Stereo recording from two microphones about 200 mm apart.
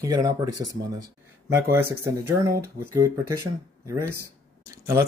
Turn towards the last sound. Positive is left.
turn(degrees=-15)  # may be behind; listen again after turning